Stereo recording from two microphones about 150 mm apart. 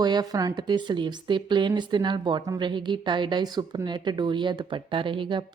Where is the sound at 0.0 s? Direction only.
25° right (ahead or behind).